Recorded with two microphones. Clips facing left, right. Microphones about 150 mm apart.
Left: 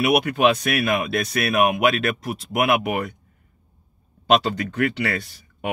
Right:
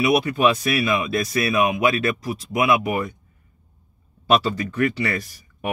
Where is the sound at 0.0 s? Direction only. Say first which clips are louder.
Even; 65° left (ahead or behind).